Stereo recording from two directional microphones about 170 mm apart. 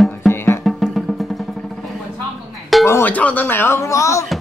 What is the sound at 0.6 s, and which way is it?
Music, centre (ahead or behind).